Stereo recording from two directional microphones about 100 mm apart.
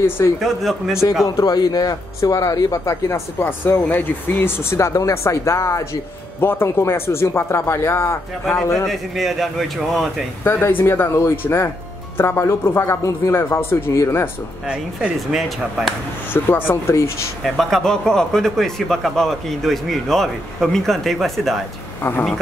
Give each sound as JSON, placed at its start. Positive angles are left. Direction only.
{"t": 0.4, "sound": "speech", "side_deg": 0}
{"t": 1.2, "sound": "a man's voice", "side_deg": 40}
{"t": 8.8, "sound": "speech", "side_deg": 0}
{"t": 10.4, "sound": "speech", "side_deg": 20}
{"t": 14.7, "sound": "speech", "side_deg": -10}
{"t": 16.3, "sound": "speech", "side_deg": 20}
{"t": 17.4, "sound": "speech", "side_deg": 0}